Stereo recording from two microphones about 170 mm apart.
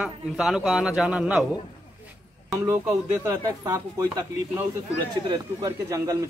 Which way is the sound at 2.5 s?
15° right (ahead or behind).